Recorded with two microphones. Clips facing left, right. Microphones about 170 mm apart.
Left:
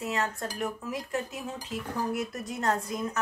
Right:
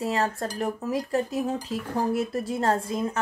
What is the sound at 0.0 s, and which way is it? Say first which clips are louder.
Speech: right 5 dB; 35° right (ahead or behind).